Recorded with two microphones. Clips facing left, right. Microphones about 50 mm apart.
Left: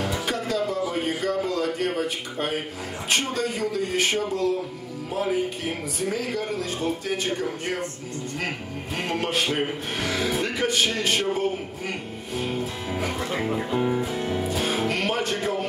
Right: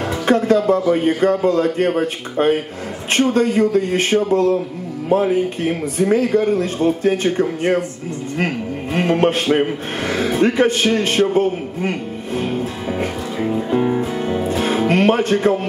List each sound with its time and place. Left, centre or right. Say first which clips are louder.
0.3 s speech: right 15 dB; right
8.9 s speech: right 10 dB; right
12.9 s speech: right 2 dB; right
13.7 s speech: right 6 dB; right
14.3 s music: right 8 dB; right
14.9 s speech: right 10 dB; right